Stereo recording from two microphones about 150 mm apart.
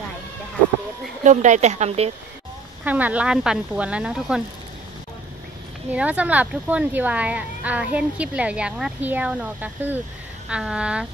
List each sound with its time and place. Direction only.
1.2 s a woman's voice: 55° right (ahead or behind)
2.8 s speech: 10° right (ahead or behind)
5.9 s speech: 10° right (ahead or behind)